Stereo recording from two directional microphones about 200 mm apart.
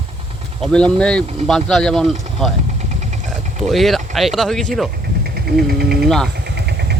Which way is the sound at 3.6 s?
Centre (ahead or behind).